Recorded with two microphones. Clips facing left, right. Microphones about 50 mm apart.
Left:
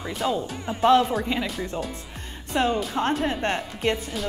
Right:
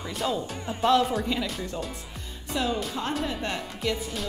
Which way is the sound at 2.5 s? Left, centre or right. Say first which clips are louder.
Left 5 dB; left.